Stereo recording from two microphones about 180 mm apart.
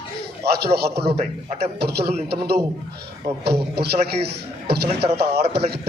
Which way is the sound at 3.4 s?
65° right (ahead or behind).